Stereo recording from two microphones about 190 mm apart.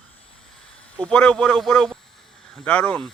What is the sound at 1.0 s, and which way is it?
A man's voice, 5° left (ahead or behind).